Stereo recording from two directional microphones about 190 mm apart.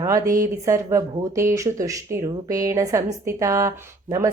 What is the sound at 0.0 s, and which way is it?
A woman's voice, 15° right (ahead or behind).